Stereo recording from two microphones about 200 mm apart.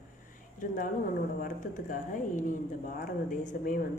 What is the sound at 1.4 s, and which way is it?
A woman's voice, 40° left (ahead or behind).